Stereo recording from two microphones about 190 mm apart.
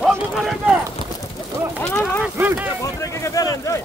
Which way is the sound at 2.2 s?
10° right (ahead or behind).